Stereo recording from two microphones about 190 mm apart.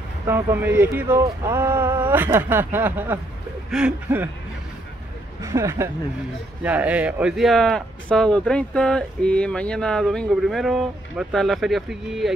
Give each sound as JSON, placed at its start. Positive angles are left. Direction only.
{"t": 0.3, "sound": "speech", "side_deg": -10}
{"t": 5.4, "sound": "speech", "side_deg": -15}